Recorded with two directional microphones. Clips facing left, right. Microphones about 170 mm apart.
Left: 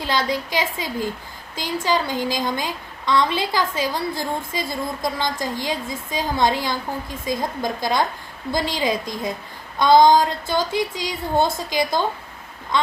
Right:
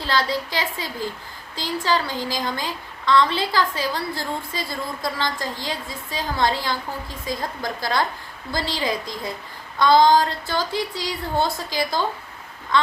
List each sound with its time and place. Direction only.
0.0 s a woman's voice: 20° left (ahead or behind)